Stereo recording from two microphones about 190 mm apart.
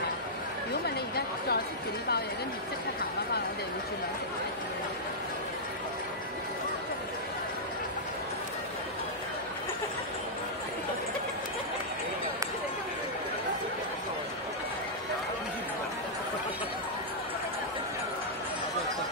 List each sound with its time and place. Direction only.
0.8 s chatter: 55° left (ahead or behind)